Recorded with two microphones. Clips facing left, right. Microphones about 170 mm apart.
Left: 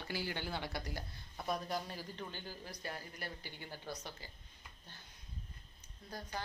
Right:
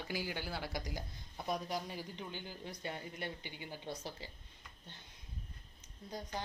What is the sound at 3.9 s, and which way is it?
Speech, 30° right (ahead or behind).